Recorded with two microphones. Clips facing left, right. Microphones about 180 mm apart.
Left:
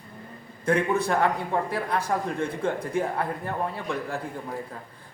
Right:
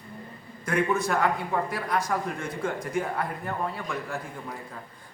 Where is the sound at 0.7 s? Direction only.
30° left (ahead or behind).